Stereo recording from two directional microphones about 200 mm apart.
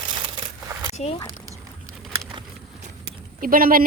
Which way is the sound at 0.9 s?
35° left (ahead or behind).